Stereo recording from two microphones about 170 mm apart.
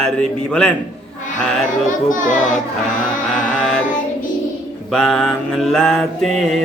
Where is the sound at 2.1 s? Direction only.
50° left (ahead or behind).